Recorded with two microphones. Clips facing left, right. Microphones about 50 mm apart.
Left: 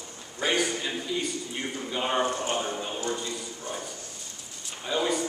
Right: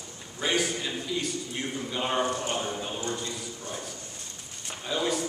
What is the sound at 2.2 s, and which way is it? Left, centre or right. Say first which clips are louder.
Speech: left 1 dB; left.